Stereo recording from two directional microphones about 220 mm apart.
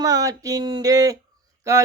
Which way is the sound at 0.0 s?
15° right (ahead or behind).